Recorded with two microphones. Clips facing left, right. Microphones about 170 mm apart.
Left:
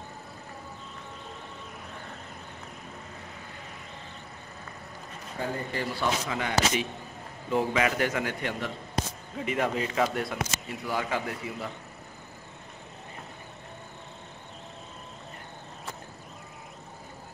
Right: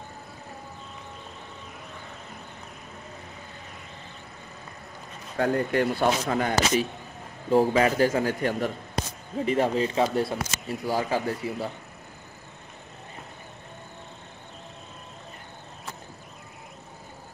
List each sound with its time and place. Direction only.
5.4 s speech: 70° right (ahead or behind); by 11.7 s 35° right (ahead or behind)